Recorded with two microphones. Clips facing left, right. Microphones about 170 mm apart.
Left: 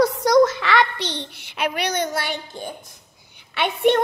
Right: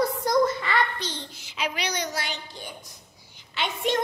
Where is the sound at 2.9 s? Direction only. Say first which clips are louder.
Even; 60° left (ahead or behind).